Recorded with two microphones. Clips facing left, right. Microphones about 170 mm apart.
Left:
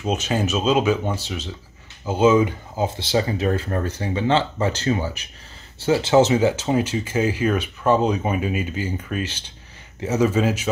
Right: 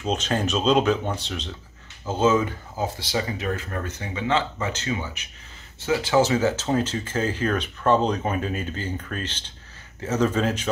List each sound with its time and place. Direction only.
0.0 s speech: 10° left (ahead or behind)
3.0 s speech: 30° left (ahead or behind); by 10.7 s 5° left (ahead or behind)